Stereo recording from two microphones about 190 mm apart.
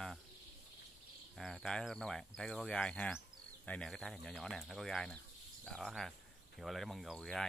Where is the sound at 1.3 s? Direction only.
Centre (ahead or behind).